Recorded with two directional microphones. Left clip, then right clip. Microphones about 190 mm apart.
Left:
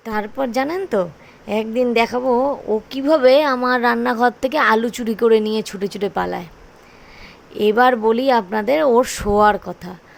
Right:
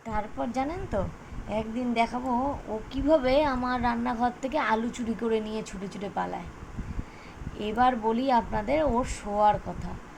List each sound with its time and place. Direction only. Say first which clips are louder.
0.0 s a woman's voice: left 10 dB; 55° left (ahead or behind)
7.5 s a woman's voice: left 11 dB; 60° left (ahead or behind)